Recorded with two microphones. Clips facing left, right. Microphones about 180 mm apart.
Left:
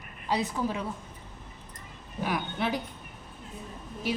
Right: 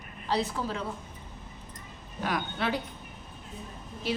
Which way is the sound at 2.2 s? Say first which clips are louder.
Even; 10° left (ahead or behind).